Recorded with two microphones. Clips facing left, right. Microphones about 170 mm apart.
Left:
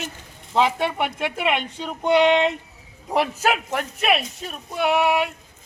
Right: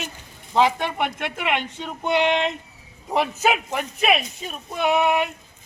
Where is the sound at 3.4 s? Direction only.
5° right (ahead or behind).